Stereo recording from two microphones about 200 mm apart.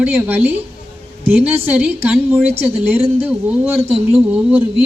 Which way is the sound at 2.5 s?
30° right (ahead or behind).